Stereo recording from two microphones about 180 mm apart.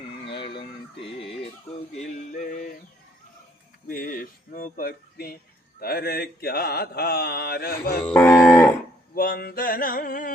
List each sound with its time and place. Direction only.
0.3 s a sound: 30° left (ahead or behind)
2.0 s a sound: 40° left (ahead or behind)
3.8 s music: 50° left (ahead or behind)
5.8 s mantra: 60° left (ahead or behind)
8.0 s cattle: 10° left (ahead or behind)
9.1 s music: 55° left (ahead or behind)